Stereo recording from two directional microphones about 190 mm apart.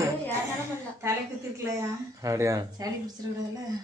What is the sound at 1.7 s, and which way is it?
A man's voice, 15° right (ahead or behind).